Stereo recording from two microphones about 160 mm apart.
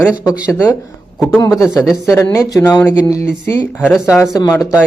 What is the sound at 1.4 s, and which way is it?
Speech, 20° left (ahead or behind).